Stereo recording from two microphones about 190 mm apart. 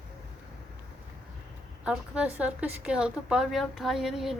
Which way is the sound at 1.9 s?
5° right (ahead or behind).